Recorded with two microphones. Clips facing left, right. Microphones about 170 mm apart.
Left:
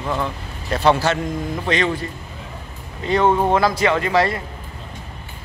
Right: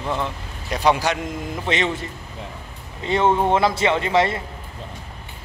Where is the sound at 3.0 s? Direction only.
25° right (ahead or behind).